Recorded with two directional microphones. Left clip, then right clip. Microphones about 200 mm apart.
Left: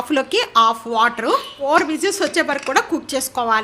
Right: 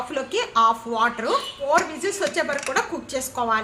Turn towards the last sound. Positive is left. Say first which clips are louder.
# left 5 dB
turn(degrees=55)  # may be behind; listen again after turning